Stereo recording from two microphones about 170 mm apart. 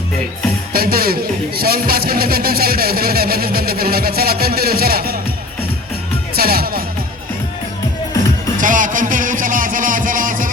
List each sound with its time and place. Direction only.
0.7 s speech: 60° right (ahead or behind)
6.3 s music: 60° right (ahead or behind)
8.6 s music: 50° right (ahead or behind)